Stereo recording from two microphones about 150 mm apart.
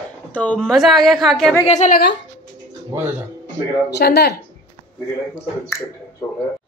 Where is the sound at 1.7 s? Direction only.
55° left (ahead or behind).